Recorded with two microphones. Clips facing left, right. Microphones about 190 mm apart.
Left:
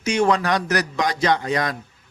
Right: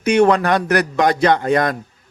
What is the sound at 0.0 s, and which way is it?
Speech, 60° right (ahead or behind).